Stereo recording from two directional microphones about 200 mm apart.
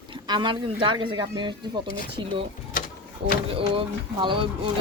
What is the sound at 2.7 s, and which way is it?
Mechanisms, 45° left (ahead or behind).